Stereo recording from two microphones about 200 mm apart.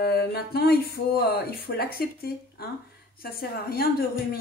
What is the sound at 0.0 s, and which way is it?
Speech, 50° left (ahead or behind).